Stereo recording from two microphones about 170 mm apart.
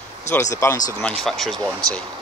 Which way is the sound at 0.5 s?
15° left (ahead or behind).